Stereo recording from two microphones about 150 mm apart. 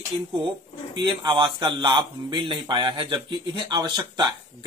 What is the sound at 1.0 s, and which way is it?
Speech, 30° right (ahead or behind).